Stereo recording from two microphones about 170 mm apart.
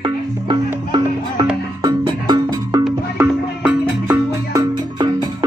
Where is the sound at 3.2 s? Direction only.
10° right (ahead or behind).